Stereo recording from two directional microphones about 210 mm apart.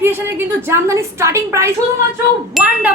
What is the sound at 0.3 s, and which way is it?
Speech, 10° right (ahead or behind).